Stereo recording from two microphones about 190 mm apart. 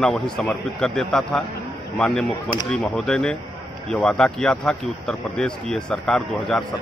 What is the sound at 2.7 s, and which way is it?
Speech, 5° left (ahead or behind).